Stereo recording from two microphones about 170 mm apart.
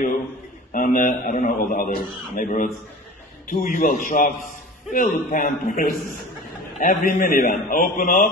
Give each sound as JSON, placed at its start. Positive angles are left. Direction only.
{"t": 0.7, "sound": "a man's voice", "side_deg": 50}